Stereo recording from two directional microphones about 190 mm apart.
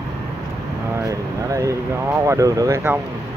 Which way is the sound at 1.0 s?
15° right (ahead or behind).